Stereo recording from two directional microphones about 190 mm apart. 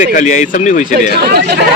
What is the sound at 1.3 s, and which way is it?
Speech, 60° right (ahead or behind).